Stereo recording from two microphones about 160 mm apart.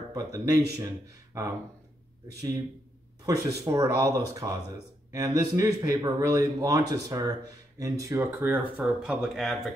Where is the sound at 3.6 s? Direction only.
20° right (ahead or behind); by 9.7 s centre (ahead or behind).